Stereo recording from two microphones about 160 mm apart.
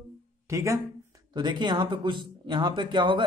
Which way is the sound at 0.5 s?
20° right (ahead or behind).